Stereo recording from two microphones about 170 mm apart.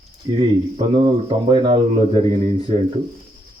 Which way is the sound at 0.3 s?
30° right (ahead or behind).